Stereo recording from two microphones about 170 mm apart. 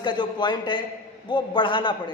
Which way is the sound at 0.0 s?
25° left (ahead or behind).